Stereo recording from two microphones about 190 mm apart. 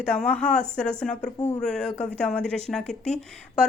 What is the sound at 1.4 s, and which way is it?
Speech, 20° left (ahead or behind).